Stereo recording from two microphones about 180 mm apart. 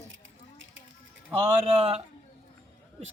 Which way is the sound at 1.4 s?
30° right (ahead or behind).